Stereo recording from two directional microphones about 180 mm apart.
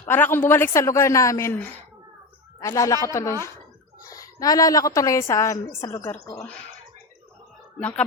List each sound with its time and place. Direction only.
0.1 s a man's voice: 10° left (ahead or behind)
2.6 s a man's voice: 15° left (ahead or behind)
7.8 s a man's voice: 10° left (ahead or behind)